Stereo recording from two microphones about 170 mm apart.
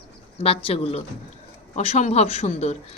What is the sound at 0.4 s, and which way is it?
Speech, 35° left (ahead or behind).